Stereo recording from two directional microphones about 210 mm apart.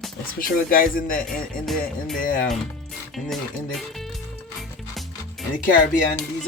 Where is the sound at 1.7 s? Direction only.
Centre (ahead or behind).